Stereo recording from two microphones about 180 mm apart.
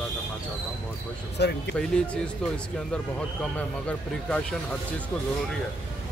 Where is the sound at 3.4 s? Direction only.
5° left (ahead or behind).